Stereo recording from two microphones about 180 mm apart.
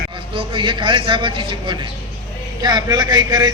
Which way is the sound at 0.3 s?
30° right (ahead or behind).